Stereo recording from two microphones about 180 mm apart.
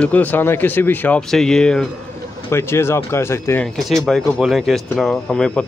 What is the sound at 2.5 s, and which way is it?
Speech, 15° left (ahead or behind).